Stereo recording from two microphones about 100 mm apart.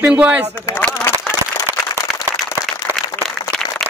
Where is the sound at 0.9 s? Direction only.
30° left (ahead or behind).